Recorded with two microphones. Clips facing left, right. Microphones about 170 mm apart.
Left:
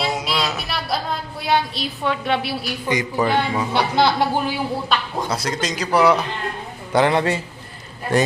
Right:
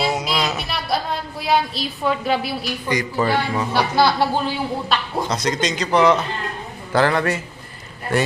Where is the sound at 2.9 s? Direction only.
20° left (ahead or behind).